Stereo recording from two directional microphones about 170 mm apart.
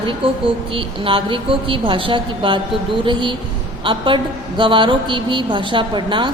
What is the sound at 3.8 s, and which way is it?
A woman's voice, 30° right (ahead or behind).